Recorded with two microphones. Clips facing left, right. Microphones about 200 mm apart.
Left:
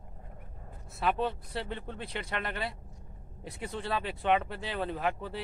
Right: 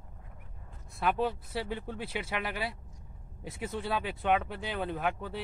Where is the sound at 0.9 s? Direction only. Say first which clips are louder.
Even; centre (ahead or behind).